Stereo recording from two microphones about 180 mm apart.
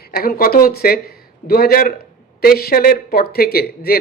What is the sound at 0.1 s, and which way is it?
Speech, 55° left (ahead or behind).